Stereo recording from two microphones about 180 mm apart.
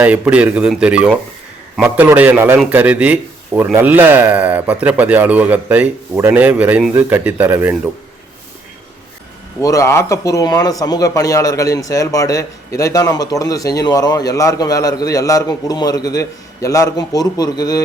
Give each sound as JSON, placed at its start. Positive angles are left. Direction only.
{"t": 0.0, "sound": "a man's voice", "side_deg": -5}
{"t": 9.6, "sound": "a man's voice", "side_deg": 15}